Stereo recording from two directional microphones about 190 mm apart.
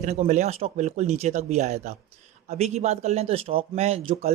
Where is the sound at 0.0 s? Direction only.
40° right (ahead or behind).